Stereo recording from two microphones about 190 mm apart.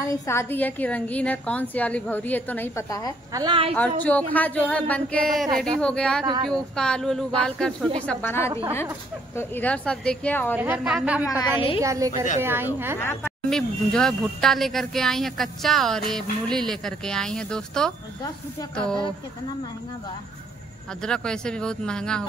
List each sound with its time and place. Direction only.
0.0 s a woman's voice: 15° left (ahead or behind)
3.3 s a woman's voice: 25° right (ahead or behind)
4.0 s a woman's voice: 10° left (ahead or behind)
10.5 s a woman's voice: 10° right (ahead or behind)
11.2 s a woman's voice: 25° left (ahead or behind)
11.8 s a woman's voice: 15° right (ahead or behind)
13.0 s speech: 10° left (ahead or behind)
21.0 s speech: 5° left (ahead or behind)